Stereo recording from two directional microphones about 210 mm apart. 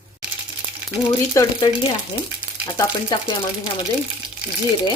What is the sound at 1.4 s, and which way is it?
Speech, 15° left (ahead or behind).